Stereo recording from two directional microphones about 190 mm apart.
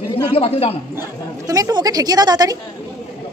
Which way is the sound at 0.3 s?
30° left (ahead or behind).